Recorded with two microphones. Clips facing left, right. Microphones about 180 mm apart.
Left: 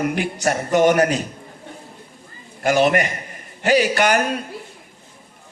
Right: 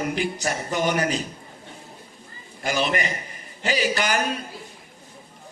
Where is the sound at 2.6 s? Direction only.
55° left (ahead or behind).